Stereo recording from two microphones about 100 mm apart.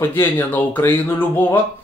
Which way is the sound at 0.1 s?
20° left (ahead or behind).